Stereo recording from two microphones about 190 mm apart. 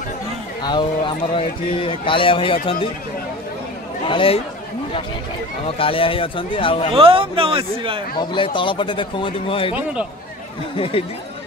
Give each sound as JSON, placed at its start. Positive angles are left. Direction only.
{"t": 0.6, "sound": "speech", "side_deg": 25}
{"t": 4.0, "sound": "speech", "side_deg": 30}
{"t": 5.8, "sound": "speech", "side_deg": 30}
{"t": 7.0, "sound": "a man's voice", "side_deg": -30}
{"t": 8.2, "sound": "speech", "side_deg": 25}
{"t": 10.8, "sound": "speech", "side_deg": 30}